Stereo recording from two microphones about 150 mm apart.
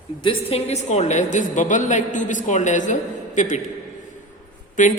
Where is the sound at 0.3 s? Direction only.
45° left (ahead or behind).